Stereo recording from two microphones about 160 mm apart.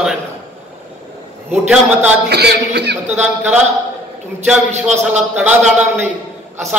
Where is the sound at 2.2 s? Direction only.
90° right.